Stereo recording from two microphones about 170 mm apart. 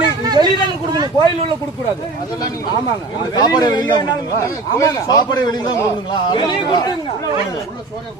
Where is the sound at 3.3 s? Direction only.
25° left (ahead or behind).